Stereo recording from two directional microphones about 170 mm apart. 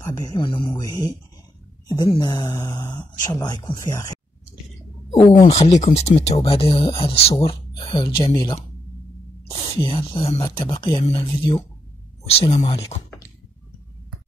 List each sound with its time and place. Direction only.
0.0 s speech: 25° left (ahead or behind)
5.5 s speech: 40° left (ahead or behind)